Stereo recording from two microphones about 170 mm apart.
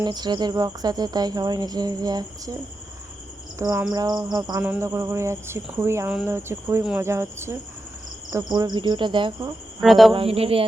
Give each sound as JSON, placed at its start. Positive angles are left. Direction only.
{"t": 0.0, "sound": "speech", "side_deg": -25}
{"t": 3.6, "sound": "speech", "side_deg": -15}
{"t": 4.6, "sound": "speech", "side_deg": -10}
{"t": 8.5, "sound": "speech", "side_deg": -25}
{"t": 9.8, "sound": "speech", "side_deg": 0}
{"t": 10.1, "sound": "speech", "side_deg": -35}